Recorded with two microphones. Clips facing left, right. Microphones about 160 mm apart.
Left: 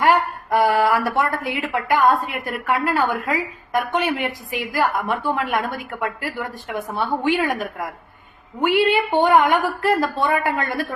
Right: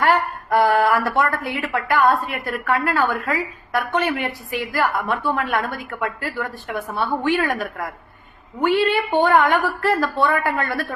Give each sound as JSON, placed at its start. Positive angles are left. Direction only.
{"t": 0.0, "sound": "a woman's voice", "side_deg": 15}